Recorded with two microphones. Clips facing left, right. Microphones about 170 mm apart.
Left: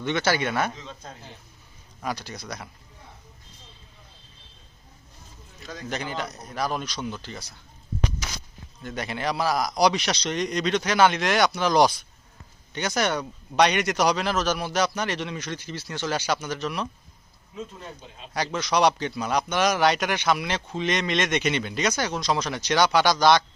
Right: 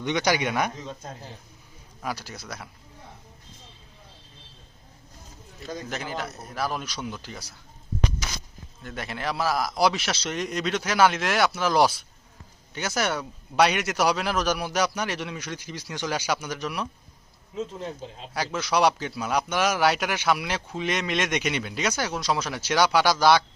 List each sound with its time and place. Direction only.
0.0 s a man's voice: 15° right (ahead or behind)
2.0 s a man's voice: 5° right (ahead or behind)
5.6 s a man's voice: 5° right (ahead or behind)
8.8 s a man's voice: centre (ahead or behind)
17.5 s speech: 30° right (ahead or behind)
18.3 s a man's voice: 5° right (ahead or behind)